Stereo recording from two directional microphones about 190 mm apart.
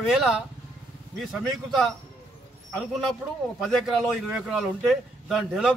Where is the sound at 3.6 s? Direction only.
Centre (ahead or behind).